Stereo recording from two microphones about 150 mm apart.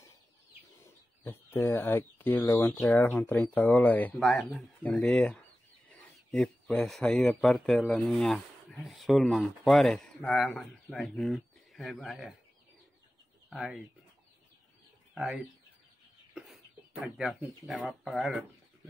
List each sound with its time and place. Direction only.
1.2 s speech: 15° left (ahead or behind); by 12.4 s centre (ahead or behind)
13.5 s speech: centre (ahead or behind)
15.1 s speech: 5° right (ahead or behind)
16.3 s a sound: centre (ahead or behind)
17.8 s speech: centre (ahead or behind)